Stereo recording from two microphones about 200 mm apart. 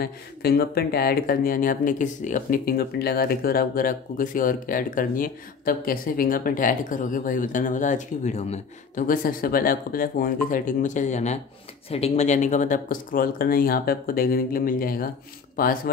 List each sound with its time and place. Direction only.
0.0 s speech: 50° left (ahead or behind)